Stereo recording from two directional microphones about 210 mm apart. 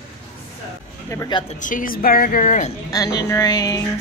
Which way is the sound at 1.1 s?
15° left (ahead or behind).